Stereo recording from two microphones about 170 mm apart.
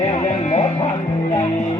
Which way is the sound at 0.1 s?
40° left (ahead or behind).